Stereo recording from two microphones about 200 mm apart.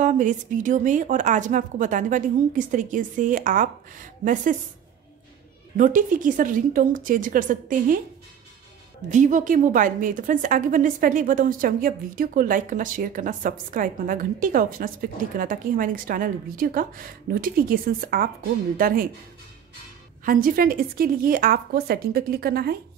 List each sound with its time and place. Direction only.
0.0 s speech: 40° right (ahead or behind)
5.8 s speech: 40° right (ahead or behind)
9.1 s a woman's voice: 40° right (ahead or behind)
20.2 s a woman's voice: 45° right (ahead or behind)